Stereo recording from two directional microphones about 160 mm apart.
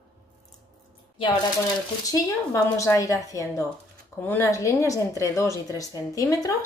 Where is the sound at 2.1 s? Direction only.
20° left (ahead or behind).